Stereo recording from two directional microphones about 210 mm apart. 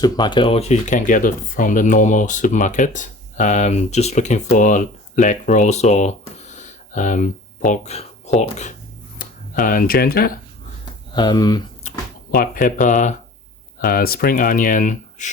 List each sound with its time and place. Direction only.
0.0 s speech: 20° left (ahead or behind); by 10.3 s 45° left (ahead or behind)
11.1 s speech: 20° left (ahead or behind)
11.8 s speech: 40° left (ahead or behind)